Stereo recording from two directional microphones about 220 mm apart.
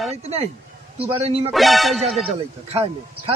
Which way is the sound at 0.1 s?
30° right (ahead or behind).